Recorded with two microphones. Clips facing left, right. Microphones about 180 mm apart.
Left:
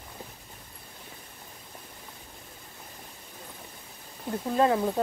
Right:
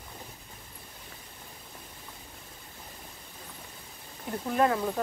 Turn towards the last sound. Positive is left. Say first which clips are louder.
# left 2 dB
turn(degrees=25)  # may be behind; listen again after turning